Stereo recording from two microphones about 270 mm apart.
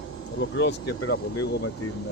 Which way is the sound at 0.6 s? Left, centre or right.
Left.